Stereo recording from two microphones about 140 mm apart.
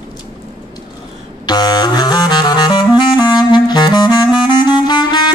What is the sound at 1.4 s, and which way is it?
Saxophone, 30° left (ahead or behind).